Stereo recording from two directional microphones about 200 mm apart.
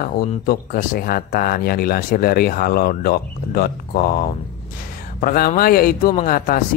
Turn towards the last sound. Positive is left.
turn(degrees=45)  # may be behind; listen again after turning